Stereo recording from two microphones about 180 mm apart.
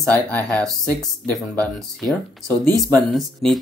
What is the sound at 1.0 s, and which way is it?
Speech, 5° left (ahead or behind).